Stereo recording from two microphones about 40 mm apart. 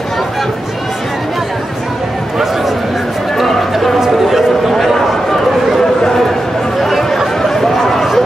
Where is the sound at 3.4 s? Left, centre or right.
Centre.